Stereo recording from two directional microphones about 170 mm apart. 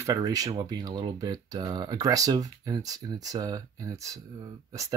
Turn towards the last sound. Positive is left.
turn(degrees=-20)  # may be behind; listen again after turning